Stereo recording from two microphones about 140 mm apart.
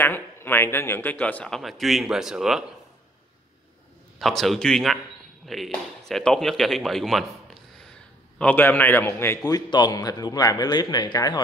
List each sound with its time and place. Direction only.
0.0 s speech: 15° left (ahead or behind); by 2.6 s 5° right (ahead or behind)
4.2 s speech: centre (ahead or behind)
8.4 s a man's voice: 10° left (ahead or behind); by 11.4 s 30° left (ahead or behind)